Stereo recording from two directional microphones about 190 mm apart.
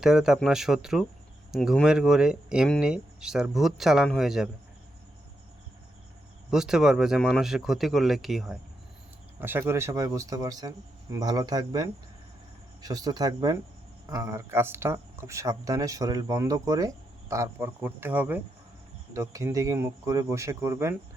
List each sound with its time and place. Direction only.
0.0 s speech: 5° right (ahead or behind)
6.5 s speech: 5° right (ahead or behind)
9.4 s speech: 10° right (ahead or behind)